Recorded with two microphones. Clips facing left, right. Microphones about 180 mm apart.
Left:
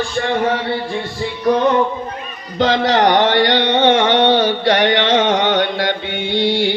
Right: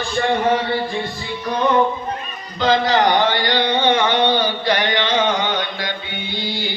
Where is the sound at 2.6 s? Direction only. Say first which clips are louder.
Left 2 dB; 75° left (ahead or behind).